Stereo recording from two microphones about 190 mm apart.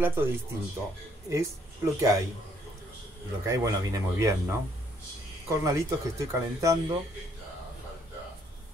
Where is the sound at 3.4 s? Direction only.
15° right (ahead or behind).